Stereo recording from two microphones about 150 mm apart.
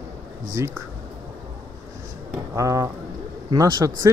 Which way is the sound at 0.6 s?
20° right (ahead or behind).